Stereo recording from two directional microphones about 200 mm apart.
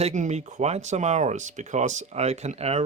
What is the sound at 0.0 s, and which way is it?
Speech, 35° right (ahead or behind).